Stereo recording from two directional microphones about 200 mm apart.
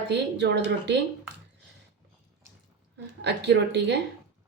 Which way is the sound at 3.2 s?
60° right (ahead or behind).